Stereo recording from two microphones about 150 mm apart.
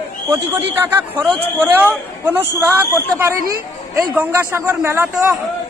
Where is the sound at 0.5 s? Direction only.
15° right (ahead or behind).